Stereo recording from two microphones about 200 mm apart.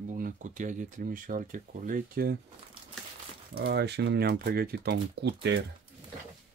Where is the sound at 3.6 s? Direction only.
55° right (ahead or behind).